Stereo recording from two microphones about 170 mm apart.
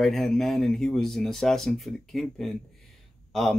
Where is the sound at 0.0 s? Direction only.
Centre (ahead or behind).